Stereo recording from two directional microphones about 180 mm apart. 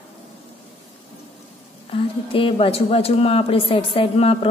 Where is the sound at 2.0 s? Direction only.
30° left (ahead or behind).